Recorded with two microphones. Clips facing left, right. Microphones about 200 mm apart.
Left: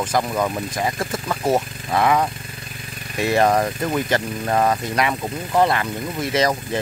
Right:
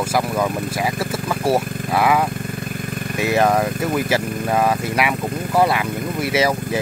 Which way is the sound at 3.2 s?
Centre (ahead or behind).